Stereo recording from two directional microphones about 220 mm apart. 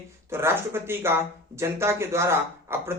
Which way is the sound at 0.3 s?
10° right (ahead or behind).